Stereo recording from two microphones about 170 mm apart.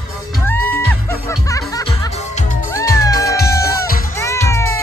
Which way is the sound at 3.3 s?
65° left (ahead or behind).